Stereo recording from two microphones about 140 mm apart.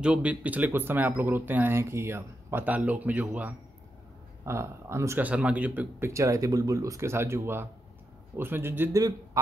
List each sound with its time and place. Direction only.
0.0 s speech: 10° right (ahead or behind)